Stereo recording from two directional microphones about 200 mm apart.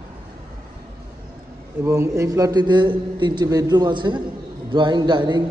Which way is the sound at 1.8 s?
15° right (ahead or behind).